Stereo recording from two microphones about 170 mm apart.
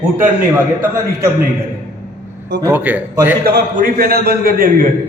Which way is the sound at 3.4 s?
60° right (ahead or behind).